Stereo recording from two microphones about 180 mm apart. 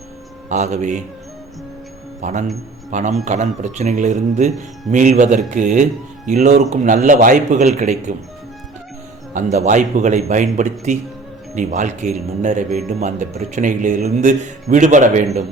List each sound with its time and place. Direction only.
0.4 s speech: 40° right (ahead or behind)
2.2 s a man's voice: 40° right (ahead or behind)
9.3 s a man's voice: 45° right (ahead or behind)